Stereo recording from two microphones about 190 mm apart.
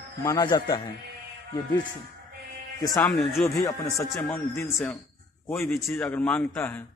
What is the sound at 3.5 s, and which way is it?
Speech, 15° left (ahead or behind).